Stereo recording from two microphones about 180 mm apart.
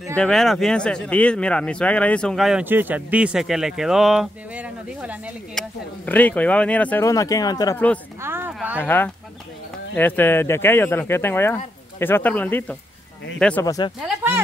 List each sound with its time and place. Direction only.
0.1 s speech: 5° left (ahead or behind)
5.5 s speech: 5° left (ahead or behind)
8.2 s a sound: 10° right (ahead or behind)
8.8 s speech: 10° left (ahead or behind)
13.7 s speech: 20° left (ahead or behind)
13.9 s speech: centre (ahead or behind)